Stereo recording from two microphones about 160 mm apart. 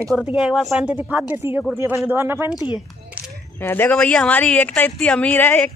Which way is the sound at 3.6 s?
15° left (ahead or behind).